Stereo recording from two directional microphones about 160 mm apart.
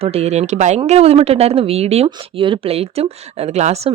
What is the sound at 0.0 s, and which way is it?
Speech, 40° right (ahead or behind).